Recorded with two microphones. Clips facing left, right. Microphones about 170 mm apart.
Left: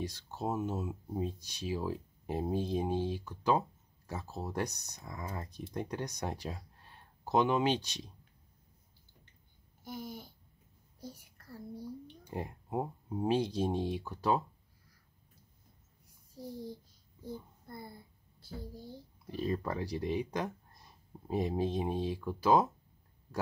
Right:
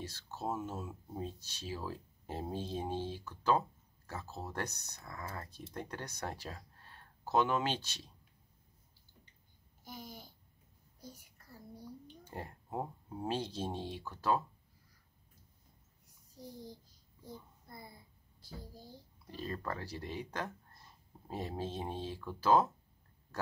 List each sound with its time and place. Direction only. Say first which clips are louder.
0.0 s speech: left 4 dB; 15° left (ahead or behind)
9.8 s babbling: left 6 dB; 60° left (ahead or behind)
11.0 s a sound: left 5 dB; 65° left (ahead or behind)
12.3 s speech: left 5 dB; 15° left (ahead or behind)
17.6 s a sound: left 5 dB; 55° left (ahead or behind)
19.3 s speech: left 6 dB; 15° left (ahead or behind)